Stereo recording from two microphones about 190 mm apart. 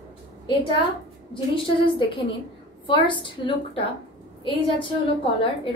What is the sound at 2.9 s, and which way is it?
A woman's voice, 25° left (ahead or behind).